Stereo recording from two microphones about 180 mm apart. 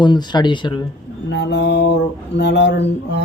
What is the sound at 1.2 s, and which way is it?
Speech, 75° left (ahead or behind).